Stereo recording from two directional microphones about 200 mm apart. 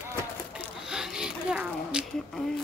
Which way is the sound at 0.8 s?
5° right (ahead or behind).